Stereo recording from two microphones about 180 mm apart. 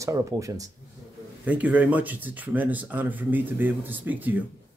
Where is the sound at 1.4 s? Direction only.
10° right (ahead or behind).